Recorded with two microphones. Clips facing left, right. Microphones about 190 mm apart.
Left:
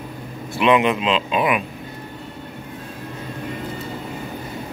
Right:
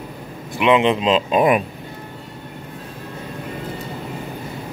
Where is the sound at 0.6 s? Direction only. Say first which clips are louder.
Right 1 dB; 20° right (ahead or behind); by 1.6 s 40° right (ahead or behind).